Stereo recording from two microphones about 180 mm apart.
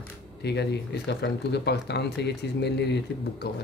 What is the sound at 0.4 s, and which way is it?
Speech, 70° left (ahead or behind).